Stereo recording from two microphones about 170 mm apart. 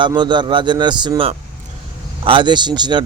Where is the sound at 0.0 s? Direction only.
25° right (ahead or behind).